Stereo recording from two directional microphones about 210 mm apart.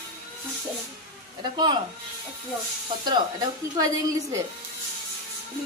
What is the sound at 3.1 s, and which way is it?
A woman's voice, 20° right (ahead or behind).